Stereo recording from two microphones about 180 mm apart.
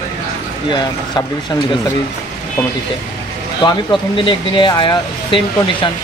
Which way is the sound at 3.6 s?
25° left (ahead or behind).